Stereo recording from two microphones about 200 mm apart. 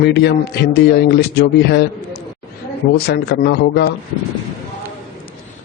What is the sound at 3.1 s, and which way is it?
Speech, 55° left (ahead or behind).